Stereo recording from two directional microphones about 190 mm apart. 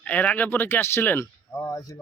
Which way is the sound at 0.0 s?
10° left (ahead or behind).